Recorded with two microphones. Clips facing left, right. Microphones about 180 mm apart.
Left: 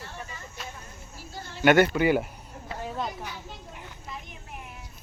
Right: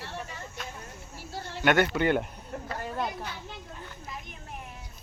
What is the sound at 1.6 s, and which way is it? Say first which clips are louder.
Speech: left 4 dB; 5° left (ahead or behind).